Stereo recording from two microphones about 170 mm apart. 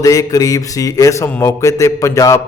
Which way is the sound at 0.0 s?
20° left (ahead or behind).